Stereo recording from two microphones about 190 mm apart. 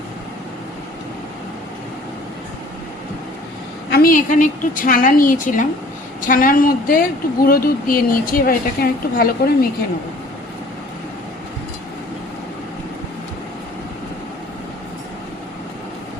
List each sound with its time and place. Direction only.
3.8 s a woman's voice: 55° left (ahead or behind)